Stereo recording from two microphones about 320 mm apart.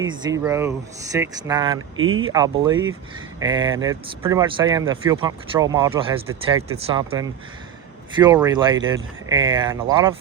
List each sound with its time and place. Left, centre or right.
0.0 s speech: centre
2.0 s speech: right
2.3 s speech: centre